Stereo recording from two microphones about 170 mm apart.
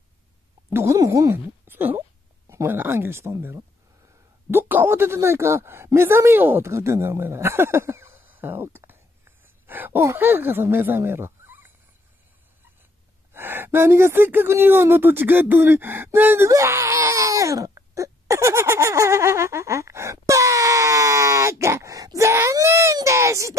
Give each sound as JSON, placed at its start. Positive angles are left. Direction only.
{"t": 0.7, "sound": "speech", "side_deg": -15}
{"t": 13.3, "sound": "speech", "side_deg": -10}